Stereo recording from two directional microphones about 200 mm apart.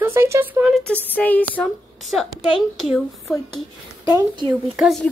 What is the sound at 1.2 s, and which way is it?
A woman's voice, 10° left (ahead or behind).